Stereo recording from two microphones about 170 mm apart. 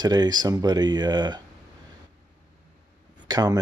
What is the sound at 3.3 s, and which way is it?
Speech, 20° right (ahead or behind).